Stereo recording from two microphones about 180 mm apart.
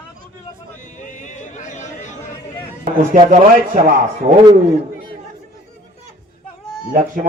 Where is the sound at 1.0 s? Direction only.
45° left (ahead or behind).